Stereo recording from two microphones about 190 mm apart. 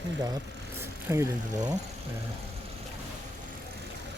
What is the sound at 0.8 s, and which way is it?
Speech, 15° right (ahead or behind).